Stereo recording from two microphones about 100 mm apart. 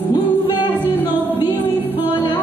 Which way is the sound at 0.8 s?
20° right (ahead or behind).